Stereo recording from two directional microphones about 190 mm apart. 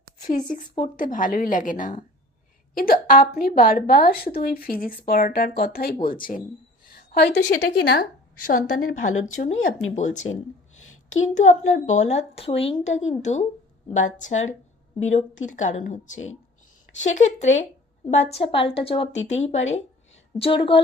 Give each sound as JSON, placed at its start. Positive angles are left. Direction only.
{"t": 0.9, "sound": "a woman's voice", "side_deg": 45}
{"t": 8.4, "sound": "a woman's voice", "side_deg": 45}
{"t": 9.9, "sound": "a woman's voice", "side_deg": 40}
{"t": 10.8, "sound": "a sound", "side_deg": 90}
{"t": 11.3, "sound": "a woman's voice", "side_deg": 40}
{"t": 18.3, "sound": "a woman's voice", "side_deg": 30}